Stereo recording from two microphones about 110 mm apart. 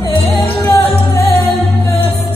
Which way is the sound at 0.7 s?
20° left (ahead or behind).